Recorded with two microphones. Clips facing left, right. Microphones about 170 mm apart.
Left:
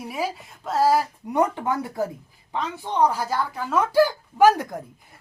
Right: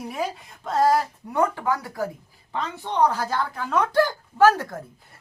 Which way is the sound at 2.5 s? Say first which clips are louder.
Left 1 dB; 10° left (ahead or behind).